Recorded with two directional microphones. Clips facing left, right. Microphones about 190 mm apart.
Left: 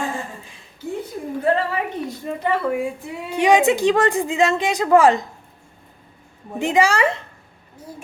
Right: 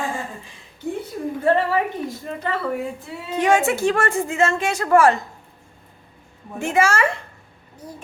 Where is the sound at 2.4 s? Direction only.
10° left (ahead or behind).